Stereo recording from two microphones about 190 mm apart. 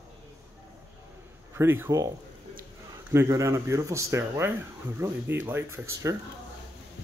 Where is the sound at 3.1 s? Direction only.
15° right (ahead or behind).